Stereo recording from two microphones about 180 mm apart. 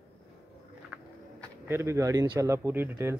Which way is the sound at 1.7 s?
15° right (ahead or behind).